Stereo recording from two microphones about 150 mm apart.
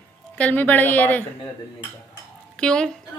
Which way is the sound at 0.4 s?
10° left (ahead or behind).